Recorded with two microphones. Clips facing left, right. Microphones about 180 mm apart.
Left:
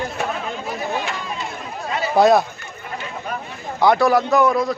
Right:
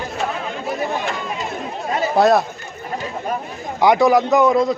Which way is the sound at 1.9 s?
45° right (ahead or behind).